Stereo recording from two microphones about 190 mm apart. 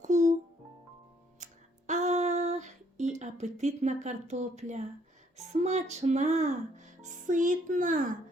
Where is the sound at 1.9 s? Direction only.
40° right (ahead or behind).